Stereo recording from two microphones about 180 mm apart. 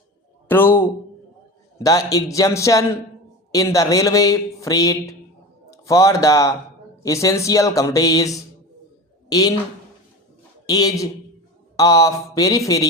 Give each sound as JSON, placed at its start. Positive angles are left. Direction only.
{"t": 0.4, "sound": "a sound", "side_deg": 10}
{"t": 1.8, "sound": "speech", "side_deg": 20}
{"t": 10.7, "sound": "speech", "side_deg": 20}